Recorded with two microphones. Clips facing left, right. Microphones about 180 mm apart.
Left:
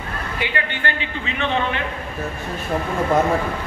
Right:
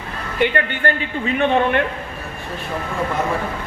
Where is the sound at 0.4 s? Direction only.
50° right (ahead or behind).